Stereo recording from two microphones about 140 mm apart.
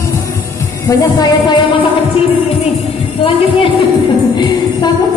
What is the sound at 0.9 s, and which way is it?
Music, 30° left (ahead or behind).